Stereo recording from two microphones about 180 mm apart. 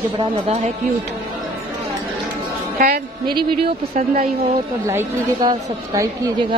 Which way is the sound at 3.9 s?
45° right (ahead or behind).